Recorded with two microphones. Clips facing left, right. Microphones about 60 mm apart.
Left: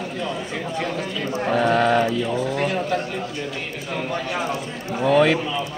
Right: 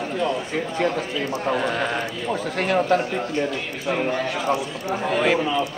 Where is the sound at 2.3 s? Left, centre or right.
Right.